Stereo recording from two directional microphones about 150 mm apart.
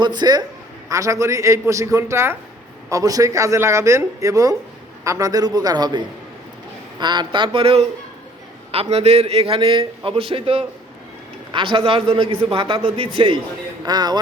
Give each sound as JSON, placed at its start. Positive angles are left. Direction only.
{"t": 0.0, "sound": "speech", "side_deg": -30}
{"t": 7.0, "sound": "a man's voice", "side_deg": -30}